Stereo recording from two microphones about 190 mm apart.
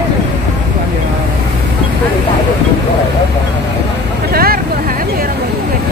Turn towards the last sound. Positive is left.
turn(degrees=-50)  # may be behind; listen again after turning